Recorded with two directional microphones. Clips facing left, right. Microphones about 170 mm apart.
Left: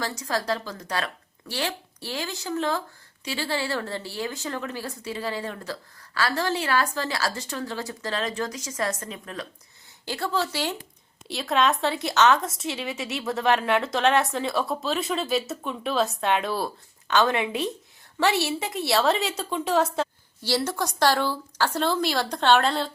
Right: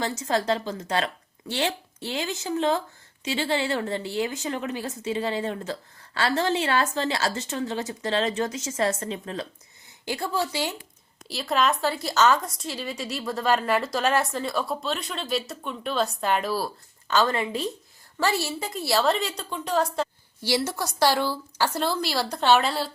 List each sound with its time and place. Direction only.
0.0 s speech: 25° right (ahead or behind)
10.1 s a woman's voice: 15° right (ahead or behind)
11.3 s a woman's voice: centre (ahead or behind)